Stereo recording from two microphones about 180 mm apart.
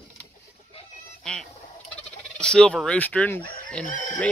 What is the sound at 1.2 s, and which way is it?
Bird, 5° left (ahead or behind).